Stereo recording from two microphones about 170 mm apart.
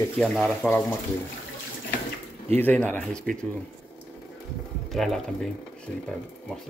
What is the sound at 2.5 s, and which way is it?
Speech, 10° left (ahead or behind).